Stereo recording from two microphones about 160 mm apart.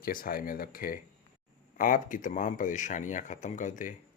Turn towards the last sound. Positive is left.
turn(degrees=55)  # may be behind; listen again after turning